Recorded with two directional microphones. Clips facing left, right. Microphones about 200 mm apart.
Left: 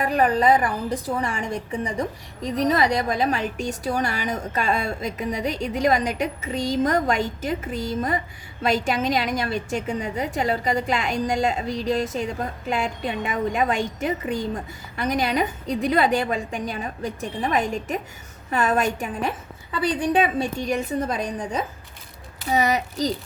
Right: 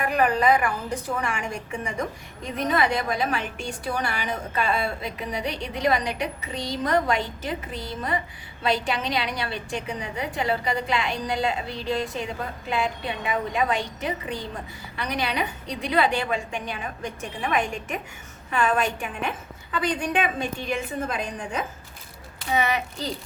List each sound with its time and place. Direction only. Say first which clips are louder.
0.0 s a woman's voice: left 2 dB; 35° left (ahead or behind)